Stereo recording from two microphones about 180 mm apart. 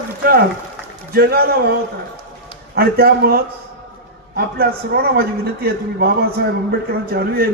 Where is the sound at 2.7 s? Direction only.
60° right (ahead or behind).